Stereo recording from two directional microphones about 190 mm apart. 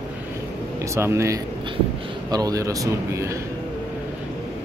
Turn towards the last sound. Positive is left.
turn(degrees=-15)  # may be behind; listen again after turning